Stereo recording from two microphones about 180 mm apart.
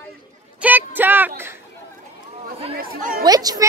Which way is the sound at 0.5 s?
10° right (ahead or behind).